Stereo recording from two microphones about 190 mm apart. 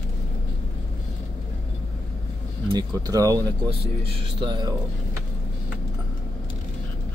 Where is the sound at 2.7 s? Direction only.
20° right (ahead or behind).